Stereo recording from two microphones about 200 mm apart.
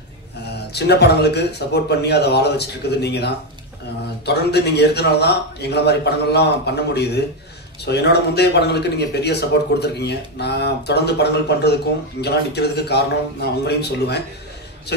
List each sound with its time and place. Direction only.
0.5 s a man's voice: 55° left (ahead or behind)